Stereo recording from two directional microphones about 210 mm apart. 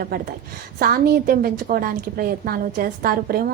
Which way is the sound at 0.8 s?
45° right (ahead or behind).